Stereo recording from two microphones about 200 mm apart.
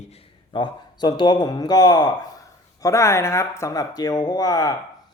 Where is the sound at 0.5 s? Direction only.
25° left (ahead or behind).